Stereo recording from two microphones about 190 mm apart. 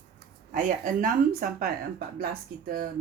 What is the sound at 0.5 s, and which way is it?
Speech, 45° right (ahead or behind).